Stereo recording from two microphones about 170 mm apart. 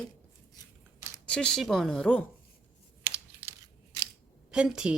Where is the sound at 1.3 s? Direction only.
5° left (ahead or behind).